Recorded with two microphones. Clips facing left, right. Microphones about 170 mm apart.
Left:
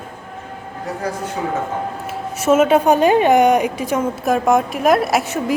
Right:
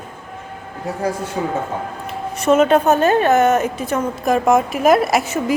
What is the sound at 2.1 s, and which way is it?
A woman's voice, 5° left (ahead or behind).